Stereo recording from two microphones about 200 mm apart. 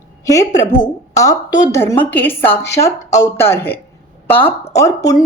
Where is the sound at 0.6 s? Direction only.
40° left (ahead or behind).